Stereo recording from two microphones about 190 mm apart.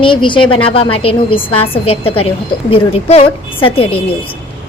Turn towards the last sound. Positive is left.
turn(degrees=30)  # may be behind; listen again after turning